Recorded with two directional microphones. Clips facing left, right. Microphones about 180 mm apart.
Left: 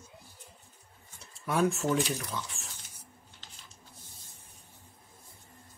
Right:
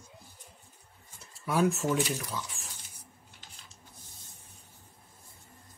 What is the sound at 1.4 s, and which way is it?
Speech, 5° right (ahead or behind).